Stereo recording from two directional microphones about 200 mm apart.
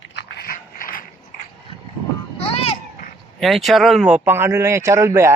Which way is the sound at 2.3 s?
30° left (ahead or behind).